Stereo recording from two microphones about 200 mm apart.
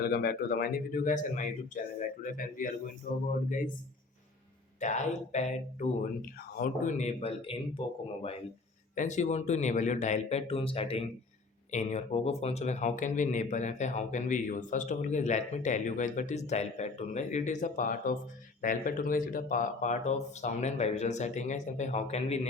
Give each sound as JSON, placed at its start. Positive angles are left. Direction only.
{"t": 0.1, "sound": "speech", "side_deg": 50}
{"t": 4.8, "sound": "a man's voice", "side_deg": 35}
{"t": 9.0, "sound": "a man's voice", "side_deg": 35}